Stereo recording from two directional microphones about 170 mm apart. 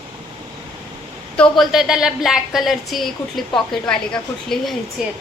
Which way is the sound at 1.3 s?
5° left (ahead or behind).